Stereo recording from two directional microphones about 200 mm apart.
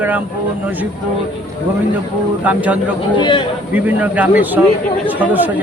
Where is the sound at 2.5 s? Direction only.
5° right (ahead or behind).